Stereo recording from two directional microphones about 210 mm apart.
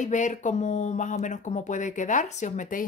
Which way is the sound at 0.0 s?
35° left (ahead or behind).